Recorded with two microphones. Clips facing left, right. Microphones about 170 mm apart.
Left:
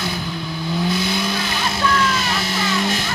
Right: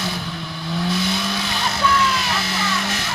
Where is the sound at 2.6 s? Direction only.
15° left (ahead or behind).